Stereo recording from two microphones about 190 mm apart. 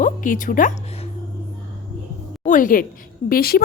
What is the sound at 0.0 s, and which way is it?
Speech, 45° left (ahead or behind).